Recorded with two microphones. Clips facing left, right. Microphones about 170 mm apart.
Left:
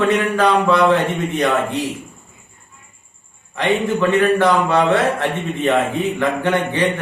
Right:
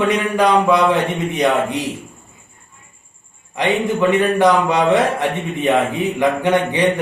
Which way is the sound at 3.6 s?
15° right (ahead or behind).